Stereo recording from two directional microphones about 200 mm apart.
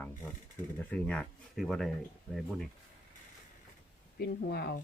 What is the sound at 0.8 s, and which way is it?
Speech, 5° left (ahead or behind).